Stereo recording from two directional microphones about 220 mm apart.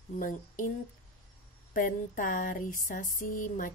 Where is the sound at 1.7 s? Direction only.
40° left (ahead or behind).